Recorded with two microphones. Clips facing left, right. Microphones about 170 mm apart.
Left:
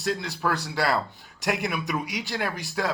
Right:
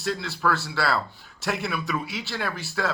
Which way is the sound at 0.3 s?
15° left (ahead or behind).